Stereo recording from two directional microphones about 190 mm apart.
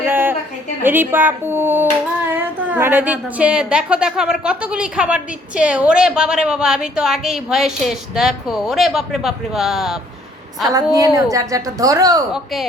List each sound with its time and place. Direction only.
0.1 s a sound: 10° right (ahead or behind)
0.8 s a woman's voice: 10° right (ahead or behind)
10.7 s a woman's voice: 20° right (ahead or behind)
12.3 s speech: centre (ahead or behind)